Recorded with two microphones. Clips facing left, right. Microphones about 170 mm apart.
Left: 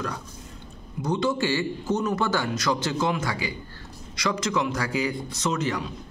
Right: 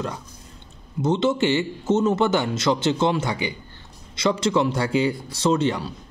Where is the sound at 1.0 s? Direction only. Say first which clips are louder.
Right 4 dB; 25° right (ahead or behind).